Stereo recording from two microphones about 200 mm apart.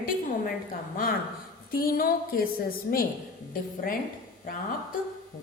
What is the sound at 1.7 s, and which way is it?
Speech, 45° left (ahead or behind).